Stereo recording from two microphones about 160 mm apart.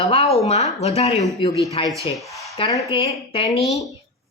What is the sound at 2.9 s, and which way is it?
Speech, 35° left (ahead or behind).